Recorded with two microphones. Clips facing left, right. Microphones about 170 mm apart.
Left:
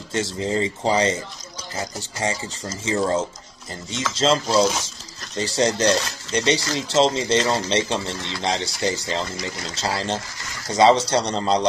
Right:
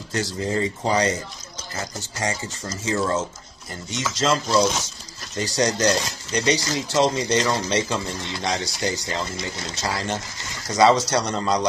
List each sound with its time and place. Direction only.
0.1 s speech: 25° left (ahead or behind)
2.1 s speech: 25° left (ahead or behind)
4.6 s speech: 5° left (ahead or behind)
5.4 s speech: 25° left (ahead or behind)
9.4 s speech: 25° right (ahead or behind)
9.8 s speech: 25° left (ahead or behind)